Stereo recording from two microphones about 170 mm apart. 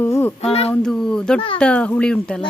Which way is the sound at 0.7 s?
5° left (ahead or behind).